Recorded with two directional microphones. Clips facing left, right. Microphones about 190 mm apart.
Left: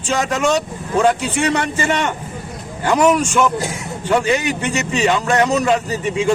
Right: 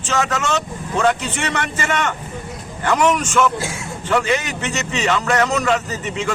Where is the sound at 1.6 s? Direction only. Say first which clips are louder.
Left 3 dB; 30° left (ahead or behind).